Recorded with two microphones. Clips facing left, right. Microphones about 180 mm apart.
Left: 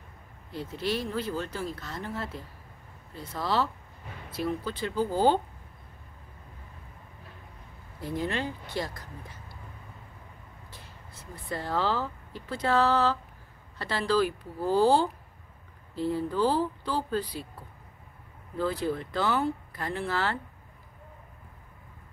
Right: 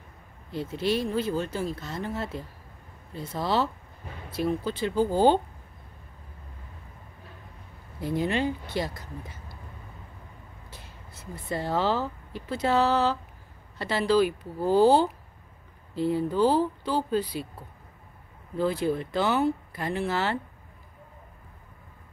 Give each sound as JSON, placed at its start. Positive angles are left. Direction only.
{"t": 0.5, "sound": "speech", "side_deg": -20}
{"t": 8.0, "sound": "speech", "side_deg": -20}
{"t": 11.4, "sound": "speech", "side_deg": -20}
{"t": 18.6, "sound": "speech", "side_deg": -20}